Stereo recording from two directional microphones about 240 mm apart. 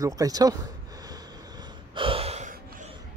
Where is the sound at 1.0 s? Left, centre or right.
Centre.